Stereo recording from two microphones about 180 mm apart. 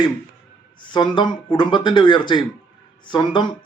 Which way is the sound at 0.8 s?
25° left (ahead or behind).